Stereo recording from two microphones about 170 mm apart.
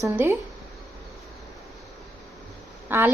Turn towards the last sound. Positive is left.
turn(degrees=-10)  # may be behind; listen again after turning